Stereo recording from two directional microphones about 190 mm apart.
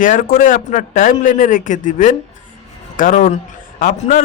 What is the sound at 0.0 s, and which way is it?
A man's voice, 45° left (ahead or behind).